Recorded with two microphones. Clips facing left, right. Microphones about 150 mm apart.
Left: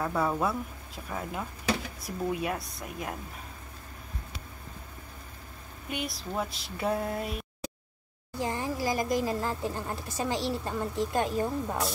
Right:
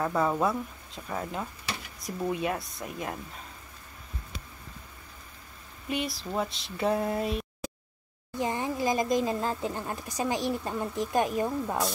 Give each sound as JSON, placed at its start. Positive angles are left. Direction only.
{"t": 0.0, "sound": "speech", "side_deg": 0}
{"t": 5.9, "sound": "speech", "side_deg": 0}
{"t": 8.4, "sound": "speech", "side_deg": -20}